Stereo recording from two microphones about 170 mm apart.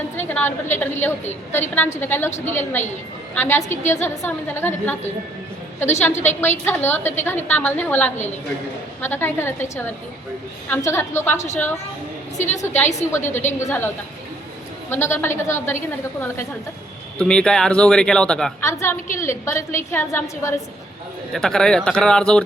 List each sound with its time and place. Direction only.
0.2 s a woman's voice: 15° left (ahead or behind)
6.7 s a woman's voice: 10° left (ahead or behind)
17.2 s speech: 5° left (ahead or behind)
18.6 s a woman's voice: 15° left (ahead or behind)
21.3 s speech: 5° left (ahead or behind)